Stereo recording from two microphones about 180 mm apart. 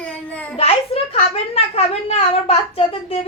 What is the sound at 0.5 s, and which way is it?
A woman's voice, 35° left (ahead or behind).